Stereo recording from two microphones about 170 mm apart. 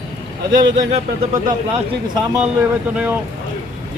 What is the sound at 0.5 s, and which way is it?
Speech, 25° right (ahead or behind).